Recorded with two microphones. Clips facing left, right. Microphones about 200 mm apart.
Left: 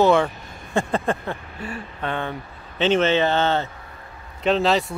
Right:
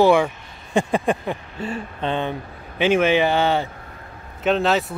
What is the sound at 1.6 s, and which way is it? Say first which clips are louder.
Speech: right 4 dB; 25° right (ahead or behind).